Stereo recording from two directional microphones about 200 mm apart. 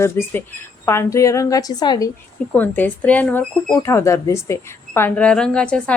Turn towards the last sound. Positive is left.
turn(degrees=5)  # may be behind; listen again after turning